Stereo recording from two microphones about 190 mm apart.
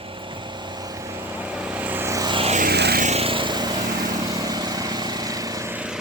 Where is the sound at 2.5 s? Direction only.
50° right (ahead or behind).